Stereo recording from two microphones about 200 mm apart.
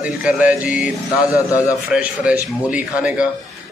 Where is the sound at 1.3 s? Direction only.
15° left (ahead or behind).